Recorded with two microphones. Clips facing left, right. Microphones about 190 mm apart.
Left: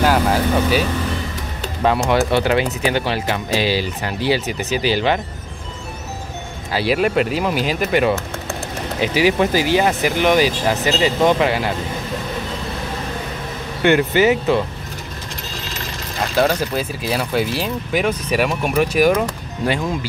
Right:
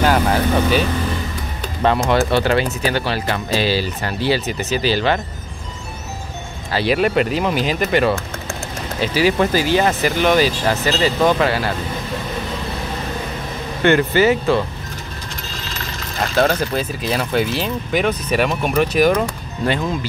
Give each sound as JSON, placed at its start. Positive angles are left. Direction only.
{"t": 0.0, "sound": "speech", "side_deg": 5}
{"t": 6.7, "sound": "speech", "side_deg": 5}
{"t": 13.8, "sound": "speech", "side_deg": 15}
{"t": 16.3, "sound": "speech", "side_deg": 5}